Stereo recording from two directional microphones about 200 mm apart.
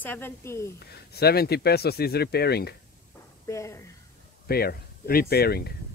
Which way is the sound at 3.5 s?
15° left (ahead or behind).